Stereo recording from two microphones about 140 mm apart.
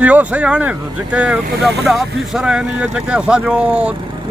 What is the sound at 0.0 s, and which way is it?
Speech, 10° right (ahead or behind).